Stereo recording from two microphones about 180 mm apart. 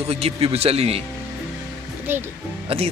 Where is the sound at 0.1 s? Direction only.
35° right (ahead or behind).